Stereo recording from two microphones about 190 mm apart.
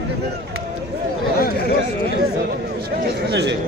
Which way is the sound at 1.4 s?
55° left (ahead or behind).